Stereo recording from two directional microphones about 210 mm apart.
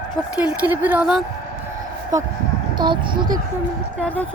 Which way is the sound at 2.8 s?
20° right (ahead or behind).